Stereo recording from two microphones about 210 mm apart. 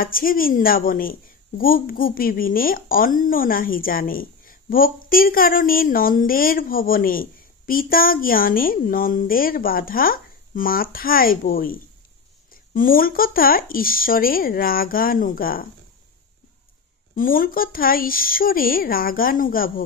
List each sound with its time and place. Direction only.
0.0 s speech: 45° left (ahead or behind)
12.7 s speech: 40° left (ahead or behind)
17.1 s speech: 40° left (ahead or behind)